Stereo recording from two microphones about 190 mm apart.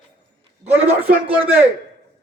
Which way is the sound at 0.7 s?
10° right (ahead or behind).